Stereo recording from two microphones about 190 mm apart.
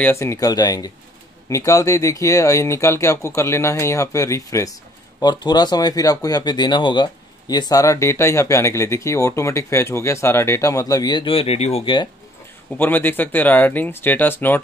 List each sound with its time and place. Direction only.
0.0 s speech: 15° left (ahead or behind)
12.7 s speech: 10° left (ahead or behind)